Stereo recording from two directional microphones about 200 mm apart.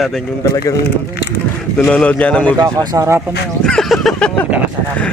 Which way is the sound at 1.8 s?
5° left (ahead or behind).